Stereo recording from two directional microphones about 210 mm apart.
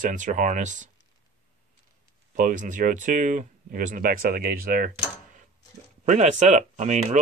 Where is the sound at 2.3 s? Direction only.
40° right (ahead or behind).